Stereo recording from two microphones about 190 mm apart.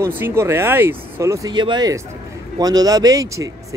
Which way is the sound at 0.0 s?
15° right (ahead or behind).